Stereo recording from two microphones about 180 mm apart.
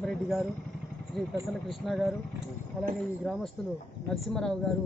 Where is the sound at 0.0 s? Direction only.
Centre (ahead or behind).